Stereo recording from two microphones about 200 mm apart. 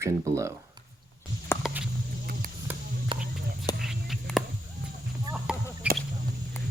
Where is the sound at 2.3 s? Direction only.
45° right (ahead or behind).